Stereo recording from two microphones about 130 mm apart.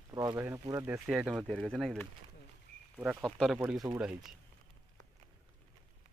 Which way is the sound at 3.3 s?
5° left (ahead or behind).